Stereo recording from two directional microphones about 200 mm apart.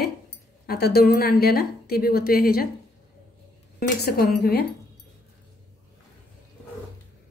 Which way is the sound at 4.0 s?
50° left (ahead or behind).